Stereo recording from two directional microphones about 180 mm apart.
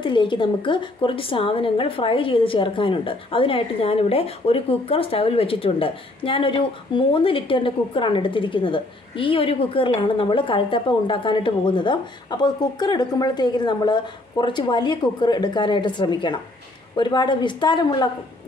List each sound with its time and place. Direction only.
0.0 s a woman's voice: 25° left (ahead or behind)